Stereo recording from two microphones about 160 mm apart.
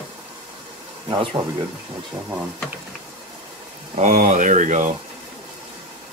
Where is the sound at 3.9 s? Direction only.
45° right (ahead or behind).